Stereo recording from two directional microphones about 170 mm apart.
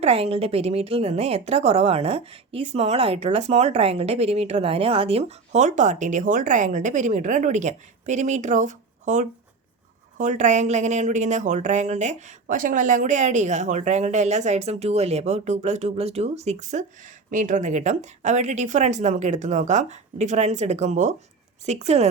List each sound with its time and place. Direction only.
0.0 s a woman's voice: 35° right (ahead or behind)